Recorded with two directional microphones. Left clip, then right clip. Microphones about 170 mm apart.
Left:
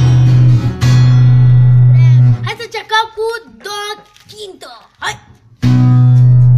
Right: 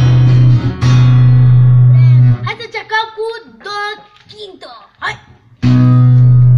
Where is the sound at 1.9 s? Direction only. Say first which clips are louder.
Even; 15° left (ahead or behind).